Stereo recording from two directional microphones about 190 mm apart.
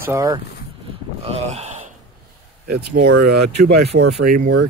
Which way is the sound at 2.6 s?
55° right (ahead or behind).